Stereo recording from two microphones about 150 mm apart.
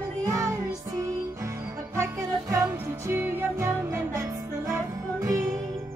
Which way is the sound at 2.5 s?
15° right (ahead or behind).